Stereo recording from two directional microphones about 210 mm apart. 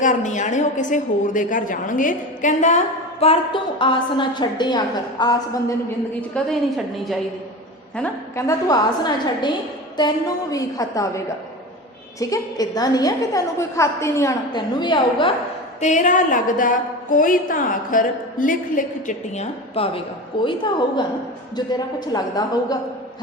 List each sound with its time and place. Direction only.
0.0 s a woman's voice: 35° left (ahead or behind); by 5.7 s 20° left (ahead or behind)
6.3 s a woman's voice: centre (ahead or behind)
12.2 s a woman's voice: 15° left (ahead or behind)
15.8 s a woman's voice: 35° left (ahead or behind); by 22.8 s 20° left (ahead or behind)